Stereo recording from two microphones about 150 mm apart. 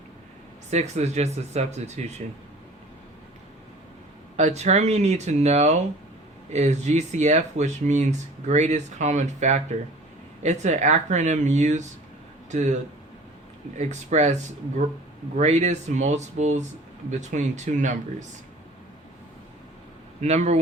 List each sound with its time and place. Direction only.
0.7 s speech: 50° right (ahead or behind)
4.4 s speech: 50° right (ahead or behind)
13.7 s speech: 50° right (ahead or behind)
15.4 s speech: 50° right (ahead or behind)
20.2 s speech: 45° right (ahead or behind)